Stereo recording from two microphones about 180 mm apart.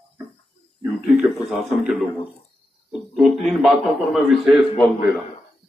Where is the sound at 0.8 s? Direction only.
5° right (ahead or behind).